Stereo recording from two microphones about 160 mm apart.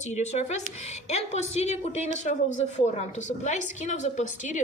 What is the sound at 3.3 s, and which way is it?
A woman's voice, 50° left (ahead or behind).